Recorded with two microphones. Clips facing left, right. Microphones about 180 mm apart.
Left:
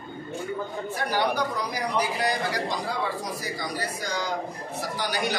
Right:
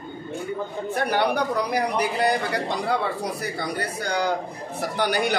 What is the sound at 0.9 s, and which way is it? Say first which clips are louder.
A man's voice: right 4 dB; 60° right (ahead or behind).